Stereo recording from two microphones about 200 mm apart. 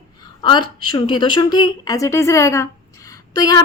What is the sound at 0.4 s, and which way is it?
A woman's voice, 20° left (ahead or behind).